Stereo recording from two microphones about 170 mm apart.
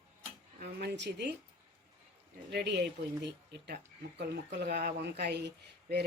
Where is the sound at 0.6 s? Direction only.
80° right.